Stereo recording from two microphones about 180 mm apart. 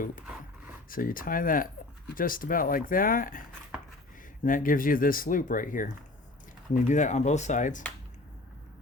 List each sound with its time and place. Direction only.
0.9 s speech: 50° left (ahead or behind)
4.4 s speech: 50° left (ahead or behind)